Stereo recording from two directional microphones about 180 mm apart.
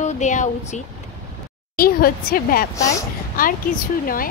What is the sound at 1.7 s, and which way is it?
Speech, 55° left (ahead or behind).